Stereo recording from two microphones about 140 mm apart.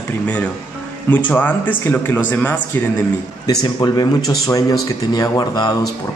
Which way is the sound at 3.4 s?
30° left (ahead or behind).